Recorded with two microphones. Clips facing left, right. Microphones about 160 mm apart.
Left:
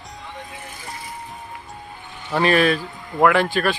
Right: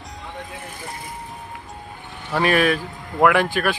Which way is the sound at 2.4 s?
10° right (ahead or behind).